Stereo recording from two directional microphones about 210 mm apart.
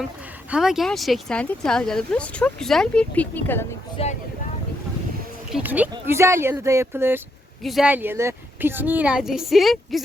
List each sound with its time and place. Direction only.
0.5 s speech: centre (ahead or behind)
3.9 s speech: 30° left (ahead or behind)
5.5 s speech: 5° right (ahead or behind)